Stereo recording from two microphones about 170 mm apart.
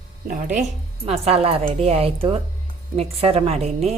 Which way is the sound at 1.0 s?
35° right (ahead or behind).